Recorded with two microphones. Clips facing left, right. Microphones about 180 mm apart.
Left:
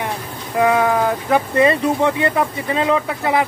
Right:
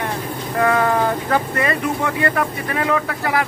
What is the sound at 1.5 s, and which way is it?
Speech, 20° left (ahead or behind).